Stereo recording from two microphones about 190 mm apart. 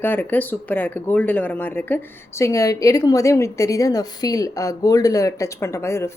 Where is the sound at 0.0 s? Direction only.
10° left (ahead or behind).